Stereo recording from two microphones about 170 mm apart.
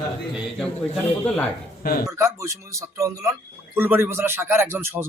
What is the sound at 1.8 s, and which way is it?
Speech, 60° left (ahead or behind).